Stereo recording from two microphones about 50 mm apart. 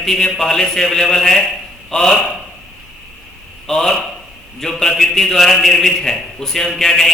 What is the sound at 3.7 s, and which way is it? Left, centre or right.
A man's voice, centre.